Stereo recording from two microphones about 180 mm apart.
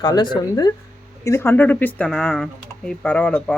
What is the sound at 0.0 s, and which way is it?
Speech, 20° left (ahead or behind).